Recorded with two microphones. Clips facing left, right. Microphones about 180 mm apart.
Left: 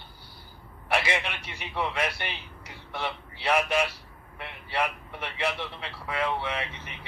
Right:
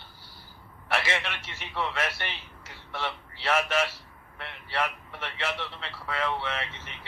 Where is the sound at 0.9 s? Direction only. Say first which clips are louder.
Left 2 dB; 15° left (ahead or behind).